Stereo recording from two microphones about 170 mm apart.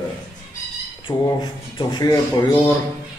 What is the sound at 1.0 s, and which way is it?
A man's voice, 25° left (ahead or behind).